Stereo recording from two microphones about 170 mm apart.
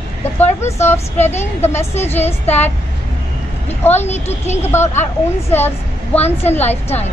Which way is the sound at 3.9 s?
40° left (ahead or behind).